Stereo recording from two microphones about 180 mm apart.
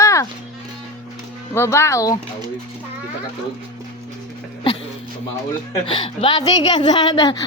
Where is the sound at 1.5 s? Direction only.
15° left (ahead or behind).